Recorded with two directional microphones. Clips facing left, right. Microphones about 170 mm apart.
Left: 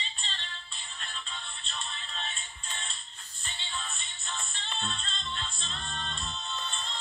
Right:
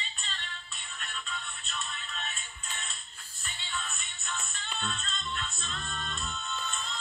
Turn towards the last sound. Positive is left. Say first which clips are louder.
# right 1 dB
turn(degrees=30)  # may be behind; listen again after turning